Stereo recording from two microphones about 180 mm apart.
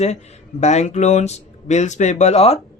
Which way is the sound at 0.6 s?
40° left (ahead or behind).